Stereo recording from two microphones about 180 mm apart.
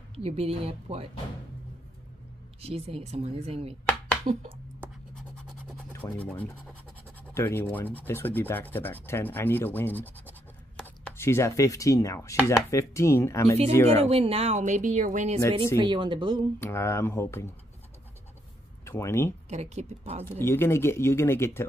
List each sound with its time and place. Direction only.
0.1 s speech: 35° right (ahead or behind)
2.6 s speech: 35° right (ahead or behind)
5.9 s chopping: 10° left (ahead or behind)
13.8 s speech: 35° right (ahead or behind)
15.8 s a woman's voice: 25° right (ahead or behind)
16.5 s chopping: 15° left (ahead or behind)
18.9 s speech: 15° left (ahead or behind)
19.5 s speech: 40° right (ahead or behind)
20.2 s chopping: 15° left (ahead or behind)